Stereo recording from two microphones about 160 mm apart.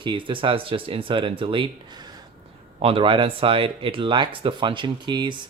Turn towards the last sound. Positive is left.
turn(degrees=-30)  # may be behind; listen again after turning